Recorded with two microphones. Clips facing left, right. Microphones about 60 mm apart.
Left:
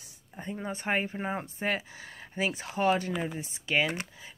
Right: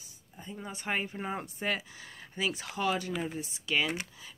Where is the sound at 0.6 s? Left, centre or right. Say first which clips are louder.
Left 4 dB; left.